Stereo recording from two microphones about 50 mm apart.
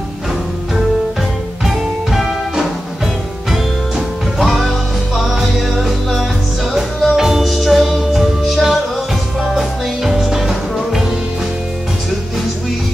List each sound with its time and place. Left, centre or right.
1.6 s music: centre
4.4 s music: centre